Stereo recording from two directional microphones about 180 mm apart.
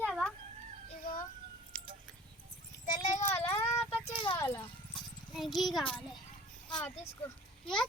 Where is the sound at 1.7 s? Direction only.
5° left (ahead or behind).